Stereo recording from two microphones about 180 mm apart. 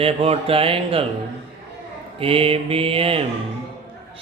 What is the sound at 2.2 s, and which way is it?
Mantra, 30° right (ahead or behind).